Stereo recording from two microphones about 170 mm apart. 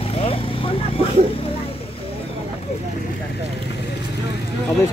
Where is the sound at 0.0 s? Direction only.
35° left (ahead or behind).